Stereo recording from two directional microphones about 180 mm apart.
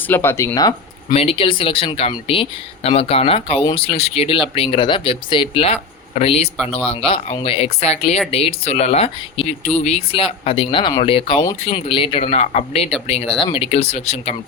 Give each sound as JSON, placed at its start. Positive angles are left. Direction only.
{"t": 0.1, "sound": "speech", "side_deg": 15}
{"t": 1.1, "sound": "speech", "side_deg": 35}
{"t": 3.6, "sound": "speech", "side_deg": 20}
{"t": 3.8, "sound": "speech", "side_deg": 35}